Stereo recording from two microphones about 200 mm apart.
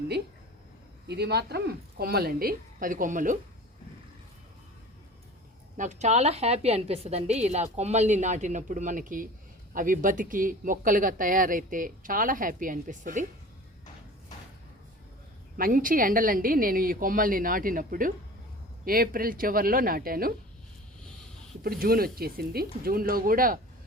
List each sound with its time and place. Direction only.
1.0 s speech: 55° right (ahead or behind)
5.7 s a woman's voice: 35° right (ahead or behind)
15.5 s speech: 45° right (ahead or behind)
21.6 s speech: 45° right (ahead or behind)